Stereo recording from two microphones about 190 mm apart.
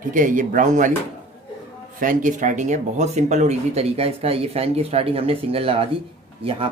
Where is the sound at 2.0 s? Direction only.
45° right (ahead or behind).